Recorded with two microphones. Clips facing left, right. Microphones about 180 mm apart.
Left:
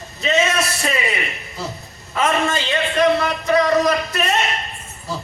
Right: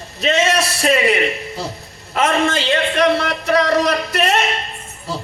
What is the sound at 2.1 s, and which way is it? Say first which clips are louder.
Speech: right 2 dB; 75° right (ahead or behind).